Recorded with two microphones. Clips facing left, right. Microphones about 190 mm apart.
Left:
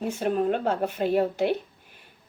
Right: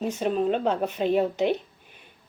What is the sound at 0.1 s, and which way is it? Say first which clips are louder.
Speech: left 1 dB; 10° left (ahead or behind).